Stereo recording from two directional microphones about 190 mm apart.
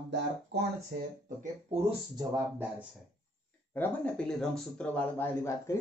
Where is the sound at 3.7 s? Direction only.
5° left (ahead or behind).